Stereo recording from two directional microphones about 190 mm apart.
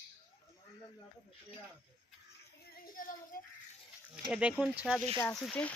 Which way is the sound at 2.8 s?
45° left (ahead or behind).